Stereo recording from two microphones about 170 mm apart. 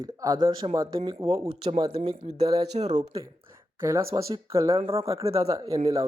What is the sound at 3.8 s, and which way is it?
Speech, 15° right (ahead or behind).